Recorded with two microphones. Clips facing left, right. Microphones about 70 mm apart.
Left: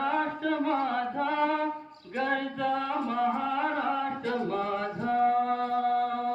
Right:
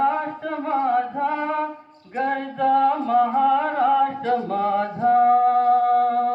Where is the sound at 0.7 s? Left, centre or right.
Right.